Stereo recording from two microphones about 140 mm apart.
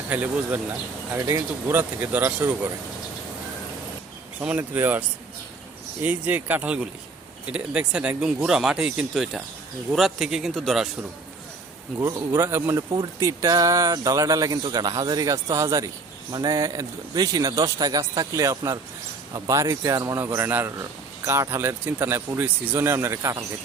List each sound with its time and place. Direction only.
0.1 s speech: 10° right (ahead or behind)
4.4 s speech: 10° right (ahead or behind)
11.9 s speech: 15° right (ahead or behind)